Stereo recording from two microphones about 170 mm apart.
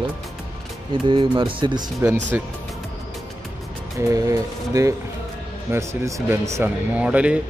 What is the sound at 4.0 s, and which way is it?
Speech, 20° right (ahead or behind).